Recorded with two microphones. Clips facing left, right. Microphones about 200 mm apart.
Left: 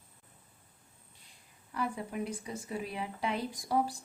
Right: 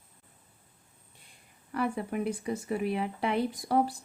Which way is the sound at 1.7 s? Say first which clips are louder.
Right 5 dB; 60° right (ahead or behind).